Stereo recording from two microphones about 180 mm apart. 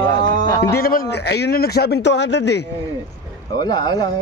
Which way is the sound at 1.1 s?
65° left (ahead or behind).